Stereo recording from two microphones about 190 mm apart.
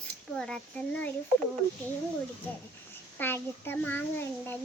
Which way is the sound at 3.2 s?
10° left (ahead or behind).